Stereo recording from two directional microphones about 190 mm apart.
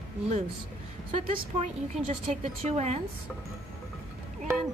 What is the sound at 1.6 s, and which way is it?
A woman's voice, 35° right (ahead or behind).